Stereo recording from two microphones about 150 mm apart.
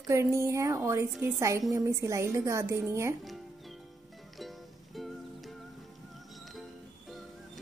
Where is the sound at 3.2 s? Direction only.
Centre (ahead or behind).